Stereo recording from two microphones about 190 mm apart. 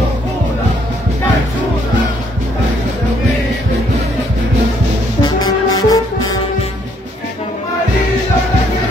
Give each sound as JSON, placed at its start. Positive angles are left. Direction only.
{"t": 5.2, "sound": "brass instrument", "side_deg": 20}